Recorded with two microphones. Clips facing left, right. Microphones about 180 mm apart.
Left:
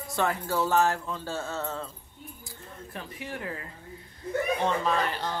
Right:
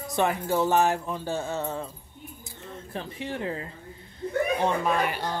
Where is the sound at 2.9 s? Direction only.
25° right (ahead or behind).